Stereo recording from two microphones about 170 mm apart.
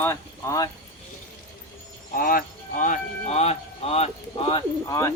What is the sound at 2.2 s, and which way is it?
Speech, 55° left (ahead or behind).